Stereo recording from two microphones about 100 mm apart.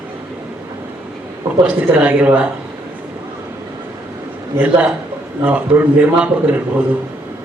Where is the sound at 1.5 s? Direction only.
20° right (ahead or behind).